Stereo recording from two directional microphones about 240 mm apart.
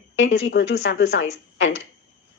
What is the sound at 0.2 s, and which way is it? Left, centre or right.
Speech, left.